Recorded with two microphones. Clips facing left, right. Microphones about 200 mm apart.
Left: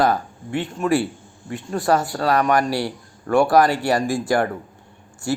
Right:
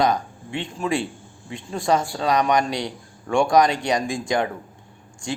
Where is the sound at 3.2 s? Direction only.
5° left (ahead or behind).